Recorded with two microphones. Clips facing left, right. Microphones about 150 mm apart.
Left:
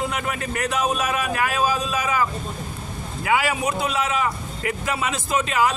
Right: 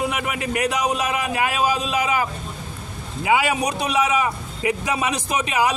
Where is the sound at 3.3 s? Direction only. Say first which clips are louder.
Right 2 dB; 20° right (ahead or behind).